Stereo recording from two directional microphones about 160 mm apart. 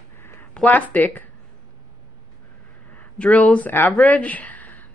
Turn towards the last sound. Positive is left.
turn(degrees=10)  # may be behind; listen again after turning